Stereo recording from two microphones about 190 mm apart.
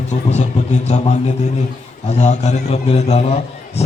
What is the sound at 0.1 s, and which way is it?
Speech, 35° left (ahead or behind).